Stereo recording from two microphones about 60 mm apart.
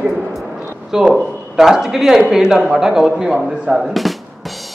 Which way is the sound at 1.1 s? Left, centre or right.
Centre.